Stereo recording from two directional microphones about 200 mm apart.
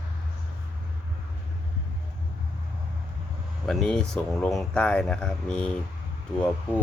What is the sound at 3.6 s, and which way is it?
Speech, 5° left (ahead or behind).